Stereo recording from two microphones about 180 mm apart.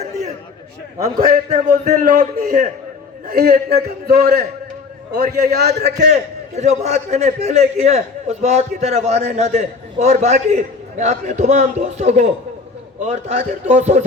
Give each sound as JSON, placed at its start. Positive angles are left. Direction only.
{"t": 1.3, "sound": "a man's voice", "side_deg": -50}
{"t": 3.2, "sound": "a man's voice", "side_deg": -55}
{"t": 6.6, "sound": "a man's voice", "side_deg": -40}